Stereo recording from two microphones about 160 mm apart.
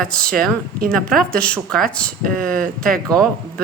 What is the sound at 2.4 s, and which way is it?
Speech, 65° right (ahead or behind).